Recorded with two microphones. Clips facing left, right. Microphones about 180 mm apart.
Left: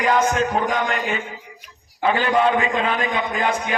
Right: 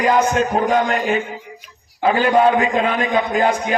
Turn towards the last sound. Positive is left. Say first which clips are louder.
# right 5 dB
turn(degrees=-40)  # may be behind; listen again after turning